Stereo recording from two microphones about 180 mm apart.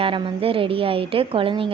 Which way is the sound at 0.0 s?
30° right (ahead or behind).